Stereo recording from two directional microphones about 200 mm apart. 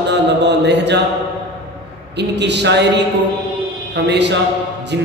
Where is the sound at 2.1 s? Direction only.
60° right (ahead or behind).